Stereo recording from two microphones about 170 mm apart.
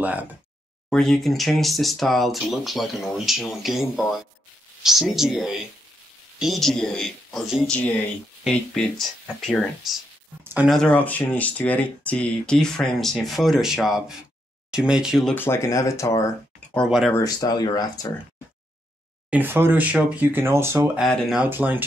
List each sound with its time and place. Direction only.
0.0 s speech: 10° right (ahead or behind)
0.8 s speech: 5° left (ahead or behind)
4.8 s speech: centre (ahead or behind)
10.4 s speech: 10° right (ahead or behind)
10.7 s speech: 5° left (ahead or behind)
15.3 s speech: 15° left (ahead or behind)
19.3 s speech: 10° right (ahead or behind)
21.0 s speech: centre (ahead or behind)
21.5 s speech: 10° right (ahead or behind)